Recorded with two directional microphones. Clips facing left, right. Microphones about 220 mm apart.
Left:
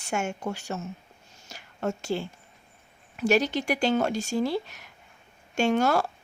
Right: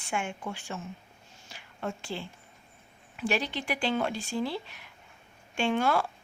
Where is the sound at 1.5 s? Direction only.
40° left (ahead or behind).